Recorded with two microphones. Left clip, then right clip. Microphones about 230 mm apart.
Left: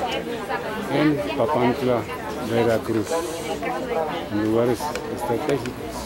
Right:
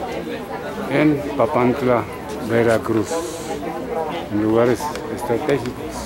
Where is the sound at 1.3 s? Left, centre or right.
Centre.